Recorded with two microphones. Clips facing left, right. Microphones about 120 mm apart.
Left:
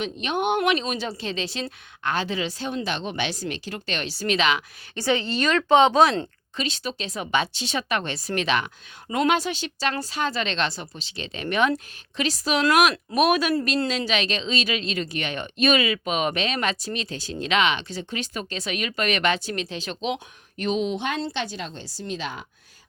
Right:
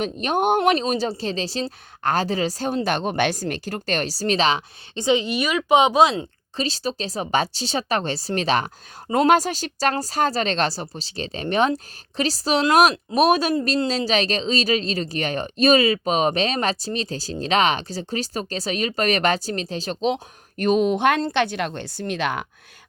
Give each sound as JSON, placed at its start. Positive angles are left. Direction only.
{"t": 0.0, "sound": "speech", "side_deg": -45}
{"t": 4.9, "sound": "a woman's voice", "side_deg": -15}
{"t": 6.6, "sound": "speech", "side_deg": -35}
{"t": 13.8, "sound": "speech", "side_deg": -35}